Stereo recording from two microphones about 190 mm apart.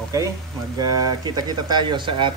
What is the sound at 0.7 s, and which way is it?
Speech, 20° right (ahead or behind).